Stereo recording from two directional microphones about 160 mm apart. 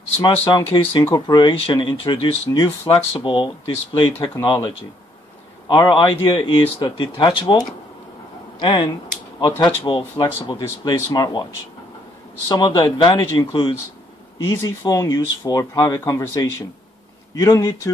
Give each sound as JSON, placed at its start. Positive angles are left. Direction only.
{"t": 0.2, "sound": "speech", "side_deg": 30}
{"t": 12.4, "sound": "speech", "side_deg": 30}